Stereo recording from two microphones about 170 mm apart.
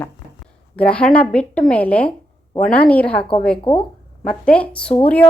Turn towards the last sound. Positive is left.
turn(degrees=10)  # may be behind; listen again after turning